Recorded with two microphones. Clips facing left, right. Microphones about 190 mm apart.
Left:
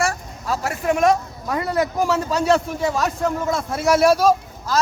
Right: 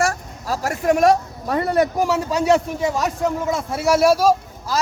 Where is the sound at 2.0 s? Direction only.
10° right (ahead or behind).